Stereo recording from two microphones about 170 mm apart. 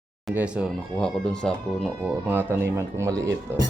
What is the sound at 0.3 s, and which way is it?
Speech, 5° right (ahead or behind).